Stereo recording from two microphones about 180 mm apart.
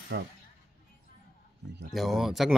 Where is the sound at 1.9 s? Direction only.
Centre (ahead or behind).